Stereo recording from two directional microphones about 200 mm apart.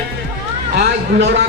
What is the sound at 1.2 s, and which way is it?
Speech, 60° right (ahead or behind).